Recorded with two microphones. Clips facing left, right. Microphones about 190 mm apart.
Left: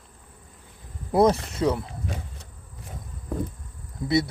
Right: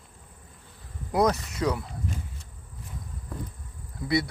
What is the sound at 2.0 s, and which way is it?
Insect, 75° left (ahead or behind).